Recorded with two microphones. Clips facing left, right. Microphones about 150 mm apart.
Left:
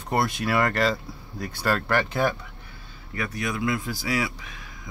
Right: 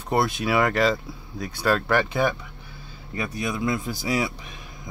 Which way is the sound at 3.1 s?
20° right (ahead or behind).